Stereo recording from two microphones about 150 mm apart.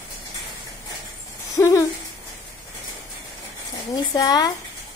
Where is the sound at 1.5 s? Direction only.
20° left (ahead or behind).